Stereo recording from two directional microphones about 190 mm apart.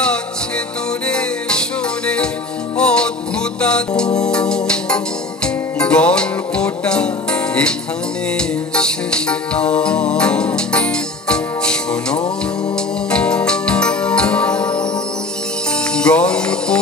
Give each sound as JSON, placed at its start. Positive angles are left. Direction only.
{"t": 1.0, "sound": "music", "side_deg": 5}
{"t": 2.8, "sound": "music", "side_deg": 5}
{"t": 15.9, "sound": "music", "side_deg": 5}